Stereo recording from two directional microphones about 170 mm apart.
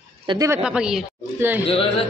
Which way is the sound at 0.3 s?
20° right (ahead or behind).